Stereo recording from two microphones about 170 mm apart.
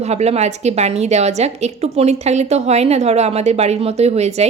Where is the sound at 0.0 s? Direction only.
40° right (ahead or behind).